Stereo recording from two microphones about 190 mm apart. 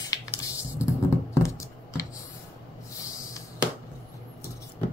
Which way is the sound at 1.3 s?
15° left (ahead or behind).